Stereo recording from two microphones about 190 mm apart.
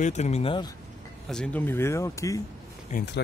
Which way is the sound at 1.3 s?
5° left (ahead or behind).